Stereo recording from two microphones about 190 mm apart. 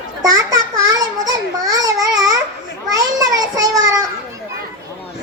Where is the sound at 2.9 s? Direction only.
20° right (ahead or behind).